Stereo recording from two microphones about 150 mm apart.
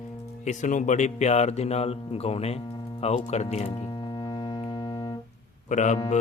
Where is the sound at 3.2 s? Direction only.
45° left (ahead or behind).